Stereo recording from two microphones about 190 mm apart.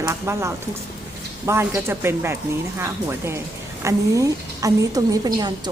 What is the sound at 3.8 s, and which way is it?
A woman's voice, 15° right (ahead or behind).